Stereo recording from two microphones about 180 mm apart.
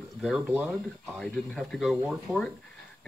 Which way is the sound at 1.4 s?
Centre (ahead or behind).